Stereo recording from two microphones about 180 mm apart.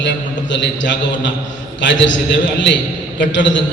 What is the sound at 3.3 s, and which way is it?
Speech, 90° left.